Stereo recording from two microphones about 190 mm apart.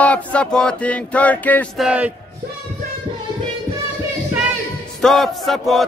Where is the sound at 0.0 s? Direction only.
5° left (ahead or behind).